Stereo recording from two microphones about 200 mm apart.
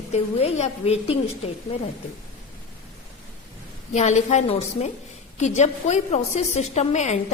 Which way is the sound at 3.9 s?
35° left (ahead or behind).